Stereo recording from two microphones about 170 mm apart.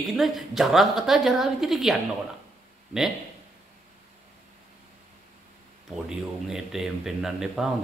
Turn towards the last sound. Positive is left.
turn(degrees=0)  # may be behind; listen again after turning